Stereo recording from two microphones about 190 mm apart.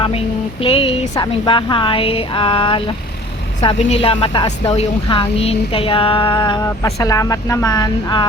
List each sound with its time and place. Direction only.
0.6 s a woman's voice: 30° left (ahead or behind)